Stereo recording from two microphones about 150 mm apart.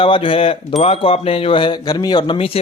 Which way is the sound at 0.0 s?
35° left (ahead or behind).